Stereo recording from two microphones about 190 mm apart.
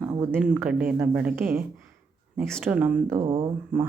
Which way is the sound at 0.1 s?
10° right (ahead or behind).